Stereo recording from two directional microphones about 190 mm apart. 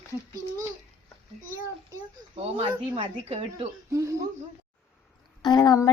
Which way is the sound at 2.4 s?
30° right (ahead or behind).